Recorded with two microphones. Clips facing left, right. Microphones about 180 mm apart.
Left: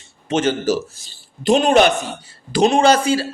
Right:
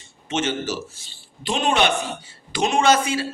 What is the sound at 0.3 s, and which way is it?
A man's voice, 40° left (ahead or behind).